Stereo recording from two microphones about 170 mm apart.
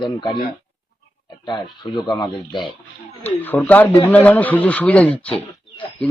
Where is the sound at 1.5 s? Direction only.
25° left (ahead or behind).